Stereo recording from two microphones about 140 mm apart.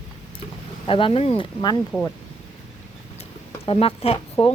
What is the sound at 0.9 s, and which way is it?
Speech, 40° left (ahead or behind).